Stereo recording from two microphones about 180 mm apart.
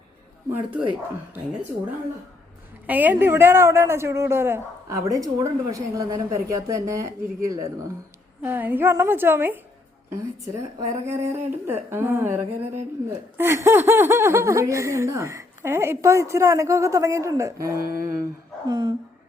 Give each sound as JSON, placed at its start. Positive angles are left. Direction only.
{"t": 0.5, "sound": "speech", "side_deg": -10}
{"t": 2.8, "sound": "speech", "side_deg": -10}
{"t": 18.7, "sound": "a sound", "side_deg": -25}